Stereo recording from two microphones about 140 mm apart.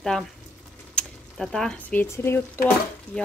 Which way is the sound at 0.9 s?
Centre (ahead or behind).